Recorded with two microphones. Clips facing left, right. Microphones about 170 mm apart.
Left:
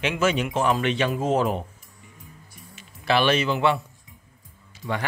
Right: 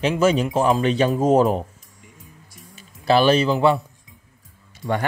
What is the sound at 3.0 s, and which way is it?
Speech, 35° right (ahead or behind).